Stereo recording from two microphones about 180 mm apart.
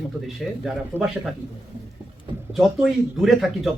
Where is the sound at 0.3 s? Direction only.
Centre (ahead or behind).